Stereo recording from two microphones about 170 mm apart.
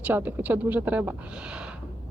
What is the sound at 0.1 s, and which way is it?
Speech, 10° right (ahead or behind).